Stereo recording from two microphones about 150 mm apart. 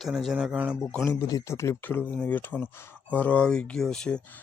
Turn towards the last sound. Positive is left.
turn(degrees=5)  # may be behind; listen again after turning